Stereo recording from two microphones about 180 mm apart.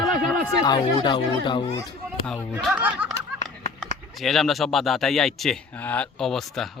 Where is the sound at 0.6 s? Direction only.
25° left (ahead or behind).